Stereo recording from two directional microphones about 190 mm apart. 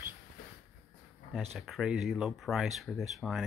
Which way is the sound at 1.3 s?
Centre (ahead or behind).